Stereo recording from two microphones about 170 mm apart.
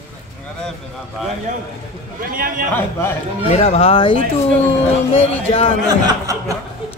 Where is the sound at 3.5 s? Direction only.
35° left (ahead or behind).